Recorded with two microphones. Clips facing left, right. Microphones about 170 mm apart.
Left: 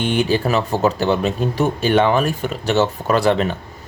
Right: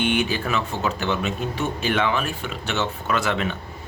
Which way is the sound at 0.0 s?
35° left (ahead or behind).